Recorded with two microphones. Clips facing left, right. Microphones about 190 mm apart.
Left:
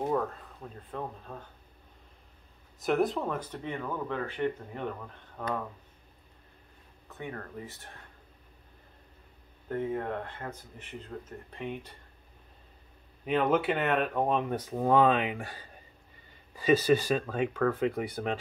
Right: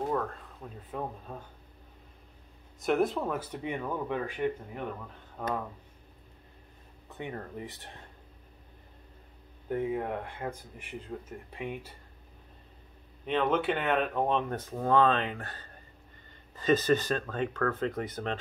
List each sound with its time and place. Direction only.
0.6 s speech: 5° right (ahead or behind)
2.8 s speech: centre (ahead or behind)
7.1 s speech: 20° right (ahead or behind)
9.7 s speech: 10° right (ahead or behind)
13.2 s speech: 5° left (ahead or behind)